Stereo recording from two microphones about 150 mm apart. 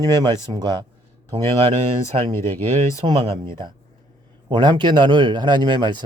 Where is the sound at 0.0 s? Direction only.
25° right (ahead or behind).